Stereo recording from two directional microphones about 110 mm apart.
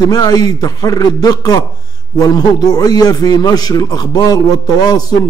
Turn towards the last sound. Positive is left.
turn(degrees=35)  # may be behind; listen again after turning